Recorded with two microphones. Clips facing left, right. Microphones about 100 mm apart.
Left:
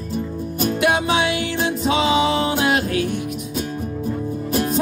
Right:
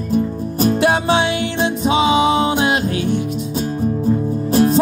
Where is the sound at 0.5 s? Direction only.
35° right (ahead or behind).